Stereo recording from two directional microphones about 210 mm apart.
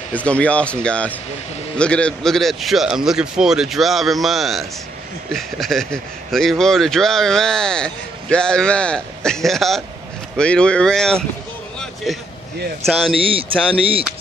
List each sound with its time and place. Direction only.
0.1 s a man's voice: 5° left (ahead or behind)
12.8 s a man's voice: centre (ahead or behind)
13.1 s speech: 25° right (ahead or behind)